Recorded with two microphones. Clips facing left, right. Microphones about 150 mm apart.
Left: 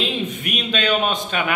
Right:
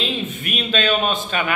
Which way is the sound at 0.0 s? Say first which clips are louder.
Left 1 dB; 15° left (ahead or behind).